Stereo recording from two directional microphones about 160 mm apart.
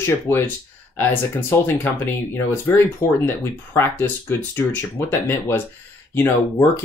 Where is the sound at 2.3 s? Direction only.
15° left (ahead or behind).